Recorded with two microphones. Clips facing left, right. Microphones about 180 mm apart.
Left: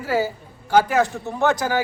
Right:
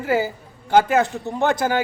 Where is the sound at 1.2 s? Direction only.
15° right (ahead or behind).